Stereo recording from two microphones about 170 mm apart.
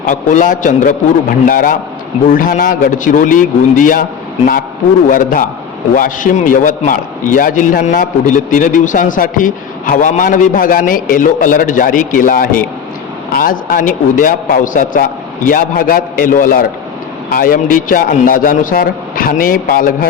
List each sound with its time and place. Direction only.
0.0 s a man's voice: 50° left (ahead or behind)
5.0 s a man's voice: 55° left (ahead or behind)